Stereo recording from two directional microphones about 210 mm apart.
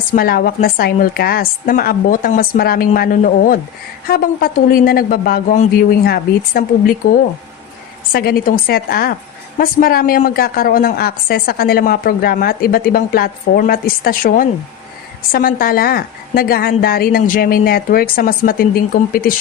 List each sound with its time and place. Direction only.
0.1 s a woman's voice: 45° left (ahead or behind)
8.1 s a woman's voice: 45° left (ahead or behind)